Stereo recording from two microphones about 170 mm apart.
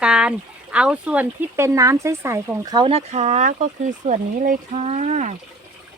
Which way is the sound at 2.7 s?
30° right (ahead or behind).